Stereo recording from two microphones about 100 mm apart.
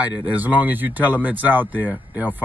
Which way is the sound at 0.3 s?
15° right (ahead or behind).